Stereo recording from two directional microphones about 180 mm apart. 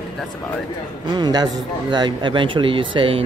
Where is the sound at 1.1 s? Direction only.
25° right (ahead or behind).